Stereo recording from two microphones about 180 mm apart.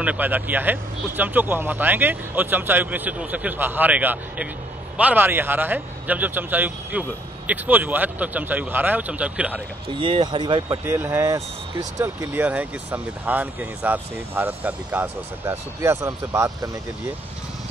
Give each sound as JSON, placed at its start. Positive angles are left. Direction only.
{"t": 0.0, "sound": "speech", "side_deg": -10}
{"t": 9.9, "sound": "speech", "side_deg": -30}
{"t": 10.9, "sound": "speech", "side_deg": -15}